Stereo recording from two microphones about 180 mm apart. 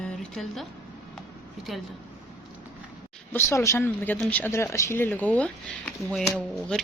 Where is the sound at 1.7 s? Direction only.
Centre (ahead or behind).